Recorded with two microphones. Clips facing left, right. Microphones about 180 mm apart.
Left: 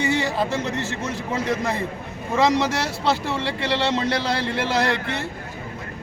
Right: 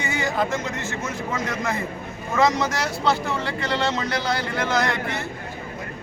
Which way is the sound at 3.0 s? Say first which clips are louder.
Right 1 dB; 30° left (ahead or behind).